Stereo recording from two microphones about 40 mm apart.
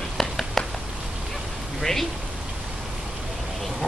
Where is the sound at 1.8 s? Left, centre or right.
Centre.